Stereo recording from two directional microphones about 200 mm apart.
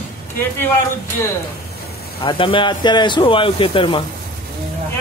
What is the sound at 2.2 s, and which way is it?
Speech, 25° left (ahead or behind).